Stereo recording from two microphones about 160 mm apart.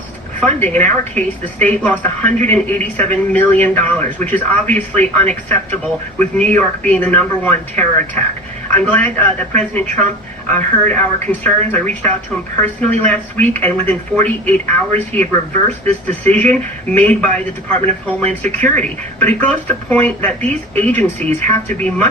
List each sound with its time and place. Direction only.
0.3 s speech: 10° left (ahead or behind)
16.0 s speech: 10° left (ahead or behind)